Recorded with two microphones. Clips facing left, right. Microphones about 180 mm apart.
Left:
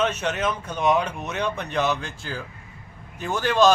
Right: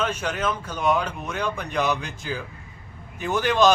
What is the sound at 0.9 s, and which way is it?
Speech, 5° left (ahead or behind).